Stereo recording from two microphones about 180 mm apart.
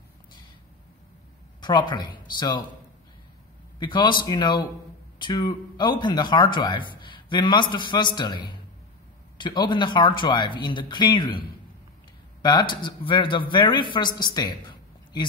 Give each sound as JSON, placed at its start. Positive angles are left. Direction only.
{"t": 1.6, "sound": "speech", "side_deg": 25}
{"t": 3.8, "sound": "speech", "side_deg": 25}